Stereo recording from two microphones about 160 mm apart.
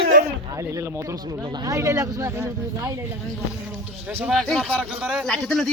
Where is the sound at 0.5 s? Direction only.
20° right (ahead or behind).